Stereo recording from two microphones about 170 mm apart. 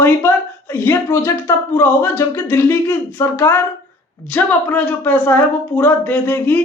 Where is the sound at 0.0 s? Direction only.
10° left (ahead or behind).